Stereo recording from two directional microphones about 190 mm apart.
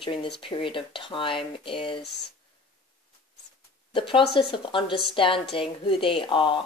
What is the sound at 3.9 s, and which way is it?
Speech, 25° left (ahead or behind).